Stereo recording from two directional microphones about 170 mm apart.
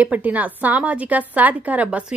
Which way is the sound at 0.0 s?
10° right (ahead or behind).